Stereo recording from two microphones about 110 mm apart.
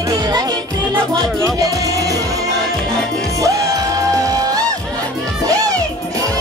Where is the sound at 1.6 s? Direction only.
30° right (ahead or behind).